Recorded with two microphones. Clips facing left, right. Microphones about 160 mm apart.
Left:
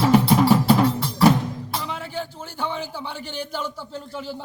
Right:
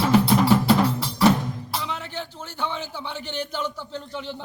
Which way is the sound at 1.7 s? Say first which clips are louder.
Left 1 dB; 5° left (ahead or behind).